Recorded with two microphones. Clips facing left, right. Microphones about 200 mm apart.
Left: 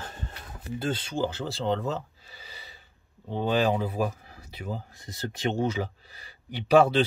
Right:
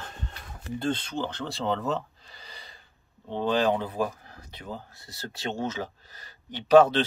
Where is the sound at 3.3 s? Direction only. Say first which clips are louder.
Even; 10° left (ahead or behind).